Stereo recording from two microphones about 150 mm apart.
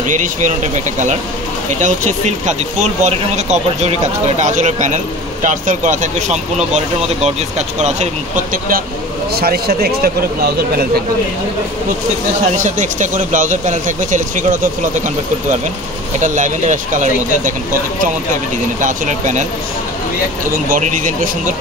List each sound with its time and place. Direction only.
0.0 s speech: 55° right (ahead or behind)
9.3 s speech: 90° right
12.5 s speech: 55° right (ahead or behind)
16.2 s speech: 55° right (ahead or behind)
20.6 s speech: 60° right (ahead or behind)